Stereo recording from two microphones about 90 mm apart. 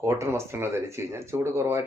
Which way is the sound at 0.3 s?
25° right (ahead or behind).